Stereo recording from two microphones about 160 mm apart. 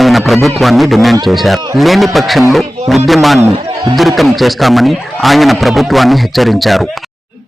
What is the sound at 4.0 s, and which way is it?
A man's voice, centre (ahead or behind).